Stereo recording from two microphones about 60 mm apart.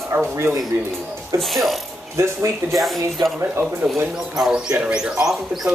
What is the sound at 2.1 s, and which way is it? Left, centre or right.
Speech, right.